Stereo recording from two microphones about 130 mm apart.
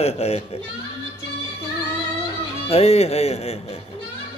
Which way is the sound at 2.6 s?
50° left (ahead or behind).